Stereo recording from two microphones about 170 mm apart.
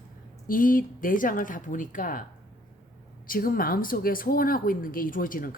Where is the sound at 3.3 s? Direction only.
55° left (ahead or behind).